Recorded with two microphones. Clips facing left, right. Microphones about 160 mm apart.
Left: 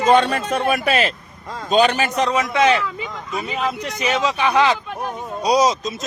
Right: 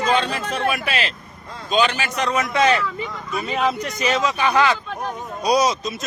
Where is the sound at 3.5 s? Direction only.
Centre (ahead or behind).